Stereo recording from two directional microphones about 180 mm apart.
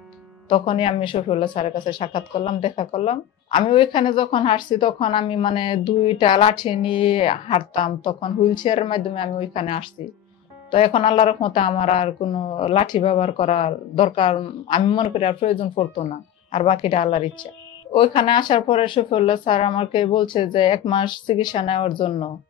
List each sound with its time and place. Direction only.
0.5 s speech: 30° left (ahead or behind)